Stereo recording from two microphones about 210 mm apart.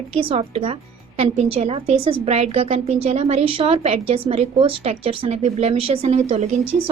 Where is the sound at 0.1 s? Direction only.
25° right (ahead or behind).